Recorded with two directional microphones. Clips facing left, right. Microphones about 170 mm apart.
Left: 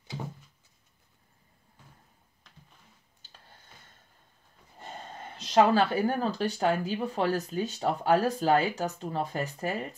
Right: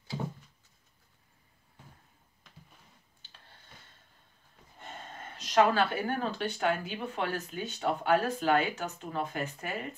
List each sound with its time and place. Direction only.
5.4 s speech: 30° left (ahead or behind)